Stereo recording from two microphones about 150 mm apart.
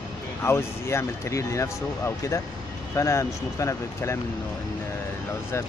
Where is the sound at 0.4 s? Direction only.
15° left (ahead or behind).